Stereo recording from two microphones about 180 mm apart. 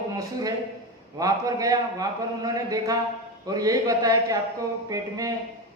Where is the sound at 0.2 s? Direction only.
20° right (ahead or behind).